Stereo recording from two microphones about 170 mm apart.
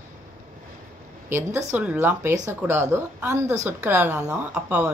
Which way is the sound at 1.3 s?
15° right (ahead or behind).